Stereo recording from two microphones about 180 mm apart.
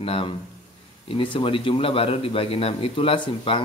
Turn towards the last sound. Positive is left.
turn(degrees=30)  # may be behind; listen again after turning